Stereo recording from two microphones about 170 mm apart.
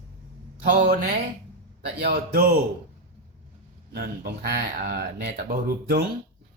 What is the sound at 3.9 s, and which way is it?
Speech, 60° right (ahead or behind).